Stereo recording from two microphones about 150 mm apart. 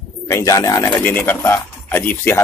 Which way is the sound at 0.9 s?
10° left (ahead or behind).